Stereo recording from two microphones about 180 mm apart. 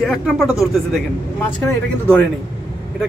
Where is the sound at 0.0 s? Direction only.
Centre (ahead or behind).